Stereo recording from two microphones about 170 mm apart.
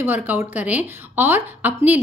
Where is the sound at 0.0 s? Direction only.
10° right (ahead or behind).